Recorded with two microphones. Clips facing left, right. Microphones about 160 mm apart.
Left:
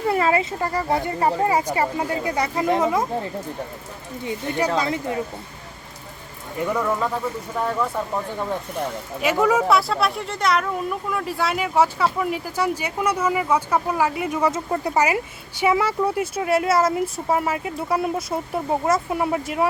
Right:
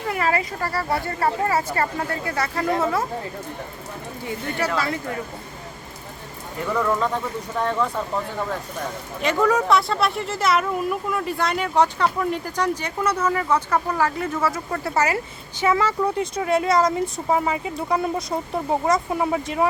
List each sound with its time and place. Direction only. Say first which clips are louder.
0.1 s speech: left 2 dB; 25° left (ahead or behind)
4.3 s speech: left 3 dB; 15° left (ahead or behind)
6.7 s speech: right 4 dB; 5° left (ahead or behind)
9.2 s speech: left 1 dB; 10° left (ahead or behind)